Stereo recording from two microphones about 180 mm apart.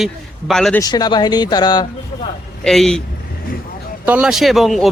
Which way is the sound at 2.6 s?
5° left (ahead or behind).